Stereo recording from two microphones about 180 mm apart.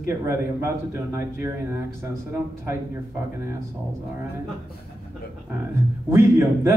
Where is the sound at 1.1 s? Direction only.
15° right (ahead or behind).